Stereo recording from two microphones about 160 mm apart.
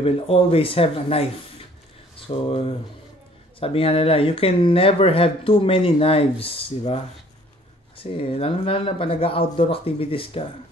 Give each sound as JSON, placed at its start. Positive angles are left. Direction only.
{"t": 0.0, "sound": "speech", "side_deg": 35}
{"t": 8.0, "sound": "speech", "side_deg": 35}